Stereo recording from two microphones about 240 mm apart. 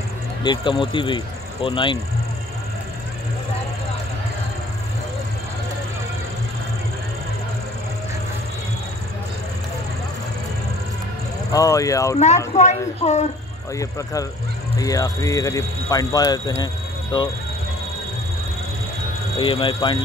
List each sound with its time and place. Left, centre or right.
0.4 s speech: centre
11.5 s speech: centre
12.5 s speech: left
13.7 s speech: centre
19.3 s speech: left